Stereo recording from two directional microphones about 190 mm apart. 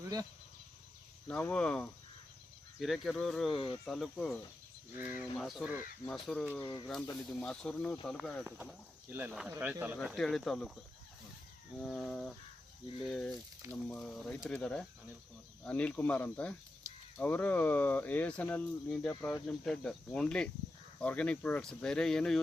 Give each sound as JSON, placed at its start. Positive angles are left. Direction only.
{"t": 1.3, "sound": "speech", "side_deg": 5}
{"t": 3.5, "sound": "speech", "side_deg": 25}
{"t": 3.8, "sound": "speech", "side_deg": 0}
{"t": 4.9, "sound": "speech", "side_deg": -10}
{"t": 5.4, "sound": "speech", "side_deg": 0}
{"t": 6.6, "sound": "speech", "side_deg": 20}
{"t": 7.3, "sound": "speech", "side_deg": 5}
{"t": 8.6, "sound": "speech", "side_deg": -10}
{"t": 10.2, "sound": "speech", "side_deg": 0}
{"t": 11.8, "sound": "speech", "side_deg": 0}